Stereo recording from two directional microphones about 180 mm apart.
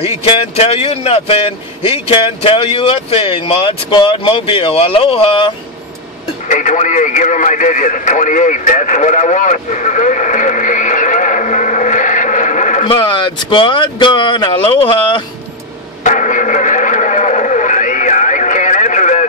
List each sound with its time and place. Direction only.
0.0 s a man's voice: 35° left (ahead or behind)
6.5 s speech: 45° left (ahead or behind)
12.8 s speech: 25° left (ahead or behind)
16.0 s radio: 45° left (ahead or behind)